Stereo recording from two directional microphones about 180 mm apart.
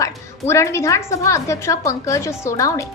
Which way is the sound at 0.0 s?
15° left (ahead or behind).